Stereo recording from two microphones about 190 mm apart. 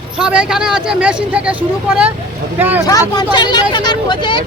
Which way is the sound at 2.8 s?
20° left (ahead or behind).